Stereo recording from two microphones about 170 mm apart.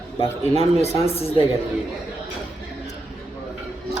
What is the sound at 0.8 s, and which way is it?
Speech, 35° left (ahead or behind).